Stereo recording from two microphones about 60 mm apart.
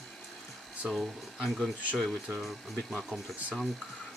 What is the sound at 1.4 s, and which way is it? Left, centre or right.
Speech, centre.